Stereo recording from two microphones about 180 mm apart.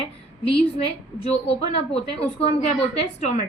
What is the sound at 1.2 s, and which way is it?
A woman's voice, 35° left (ahead or behind).